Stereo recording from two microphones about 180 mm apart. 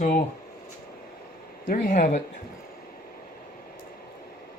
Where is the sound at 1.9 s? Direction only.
40° left (ahead or behind).